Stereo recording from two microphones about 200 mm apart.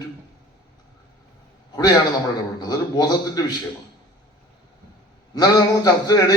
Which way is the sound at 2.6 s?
20° left (ahead or behind).